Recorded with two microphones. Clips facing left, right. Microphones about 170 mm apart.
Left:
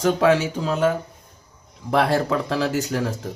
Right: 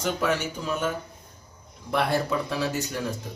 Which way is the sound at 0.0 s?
90° left.